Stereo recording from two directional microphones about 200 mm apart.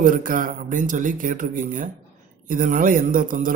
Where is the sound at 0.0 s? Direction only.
45° right (ahead or behind).